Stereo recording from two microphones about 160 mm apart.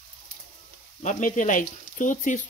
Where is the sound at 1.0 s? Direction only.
55° left (ahead or behind).